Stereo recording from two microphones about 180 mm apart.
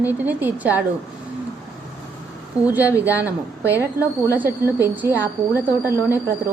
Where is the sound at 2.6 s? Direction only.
20° left (ahead or behind).